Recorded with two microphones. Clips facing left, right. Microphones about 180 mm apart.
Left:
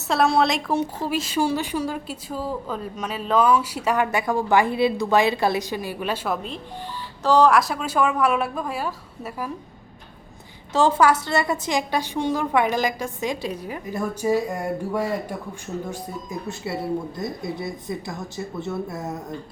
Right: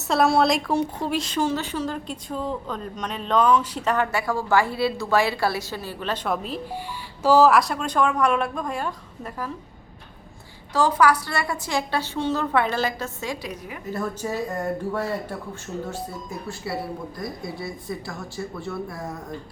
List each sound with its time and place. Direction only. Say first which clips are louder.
0.1 s a woman's voice: right 1 dB; centre (ahead or behind)
6.3 s speech: right 2 dB; centre (ahead or behind)
10.8 s a woman's voice: left 1 dB; 25° left (ahead or behind)
13.8 s a woman's voice: left 4 dB; 10° left (ahead or behind)